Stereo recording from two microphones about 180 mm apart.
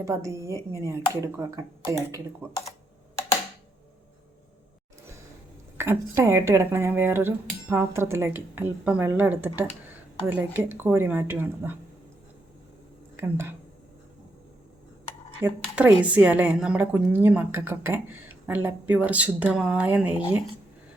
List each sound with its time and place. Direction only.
0.0 s a woman's voice: 15° right (ahead or behind)
5.7 s a woman's voice: 15° right (ahead or behind)
13.1 s speech: 15° right (ahead or behind)
15.4 s a woman's voice: 10° right (ahead or behind)